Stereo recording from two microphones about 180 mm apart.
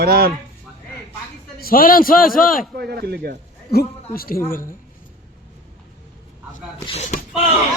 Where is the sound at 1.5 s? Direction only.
55° left (ahead or behind).